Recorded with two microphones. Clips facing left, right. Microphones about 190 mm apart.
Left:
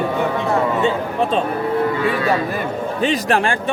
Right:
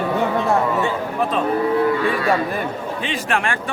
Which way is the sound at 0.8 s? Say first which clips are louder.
Left 3 dB; 25° left (ahead or behind).